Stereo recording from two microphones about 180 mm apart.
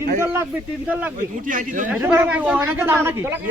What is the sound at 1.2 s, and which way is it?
Speech, 50° right (ahead or behind).